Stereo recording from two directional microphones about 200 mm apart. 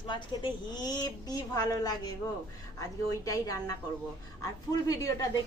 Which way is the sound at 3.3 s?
15° left (ahead or behind).